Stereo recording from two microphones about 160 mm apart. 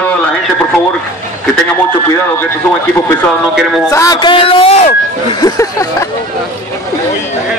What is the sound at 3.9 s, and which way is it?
Speech, 20° left (ahead or behind).